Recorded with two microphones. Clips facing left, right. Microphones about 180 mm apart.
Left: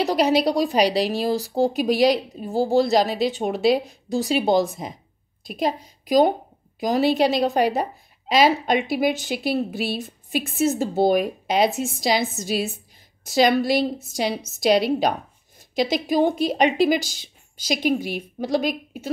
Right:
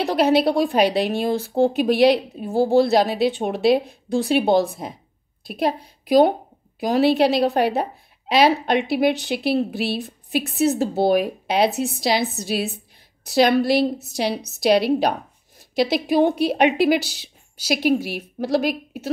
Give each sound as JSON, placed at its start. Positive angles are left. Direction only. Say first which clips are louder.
{"t": 0.0, "sound": "a woman's voice", "louder": "right 2 dB", "side_deg": 0}